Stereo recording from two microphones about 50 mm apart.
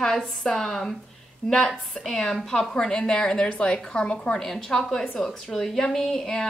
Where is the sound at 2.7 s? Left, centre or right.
Centre.